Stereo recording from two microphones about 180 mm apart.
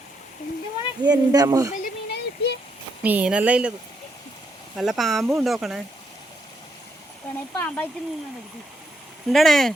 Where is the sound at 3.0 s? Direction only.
10° right (ahead or behind).